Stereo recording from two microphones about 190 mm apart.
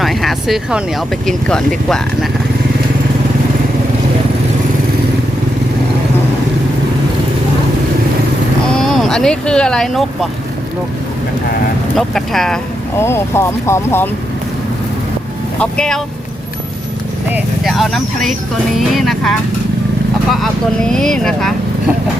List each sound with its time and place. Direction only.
0.0 s speech: centre (ahead or behind)
8.7 s speech: centre (ahead or behind)
11.9 s speech: centre (ahead or behind)
13.0 s speech: 15° left (ahead or behind)
15.5 s speech: 5° left (ahead or behind)
17.3 s speech: centre (ahead or behind)